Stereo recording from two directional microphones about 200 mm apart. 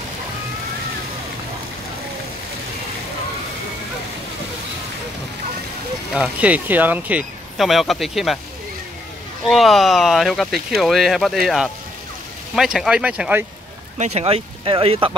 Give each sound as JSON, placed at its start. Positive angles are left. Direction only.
{"t": 6.1, "sound": "speech", "side_deg": -5}
{"t": 9.5, "sound": "speech", "side_deg": 0}
{"t": 13.9, "sound": "speech", "side_deg": -35}